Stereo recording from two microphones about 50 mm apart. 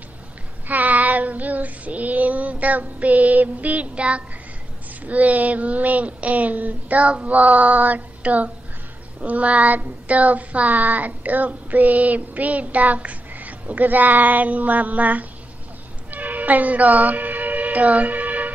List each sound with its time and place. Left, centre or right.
0.7 s child singing: right
16.1 s music: right